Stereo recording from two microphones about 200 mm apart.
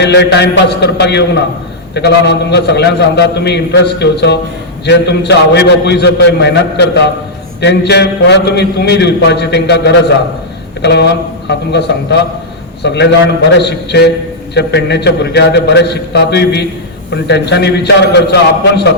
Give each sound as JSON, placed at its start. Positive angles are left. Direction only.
{"t": 0.0, "sound": "a man's voice", "side_deg": 60}
{"t": 12.8, "sound": "a man's voice", "side_deg": 60}